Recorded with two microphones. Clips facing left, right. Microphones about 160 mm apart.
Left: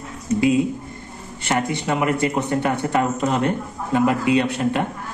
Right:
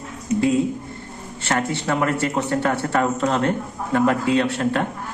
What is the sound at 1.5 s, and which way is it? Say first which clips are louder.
Speech: left 1 dB; 15° left (ahead or behind).